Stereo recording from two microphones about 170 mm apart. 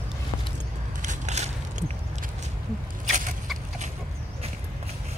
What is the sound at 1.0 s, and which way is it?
Crushing, 45° right (ahead or behind).